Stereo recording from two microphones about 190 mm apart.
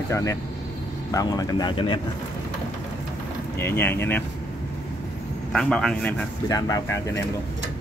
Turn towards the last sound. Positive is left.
turn(degrees=15)  # may be behind; listen again after turning